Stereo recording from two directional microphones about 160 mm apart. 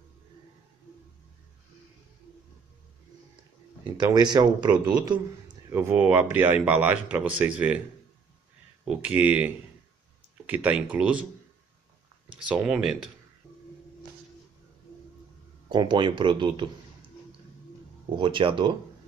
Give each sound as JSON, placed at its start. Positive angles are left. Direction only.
{"t": 3.8, "sound": "speech", "side_deg": -30}
{"t": 5.7, "sound": "speech", "side_deg": -15}
{"t": 8.8, "sound": "speech", "side_deg": -5}
{"t": 10.5, "sound": "speech", "side_deg": -10}
{"t": 12.4, "sound": "speech", "side_deg": -5}
{"t": 15.7, "sound": "speech", "side_deg": -30}
{"t": 18.1, "sound": "speech", "side_deg": -30}